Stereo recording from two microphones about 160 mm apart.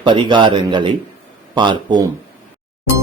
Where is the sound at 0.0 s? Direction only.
30° right (ahead or behind).